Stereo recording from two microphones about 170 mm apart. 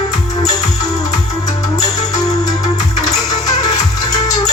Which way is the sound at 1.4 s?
20° left (ahead or behind).